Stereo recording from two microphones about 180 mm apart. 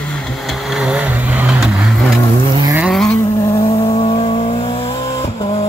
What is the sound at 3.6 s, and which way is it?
Vehicle, 35° left (ahead or behind).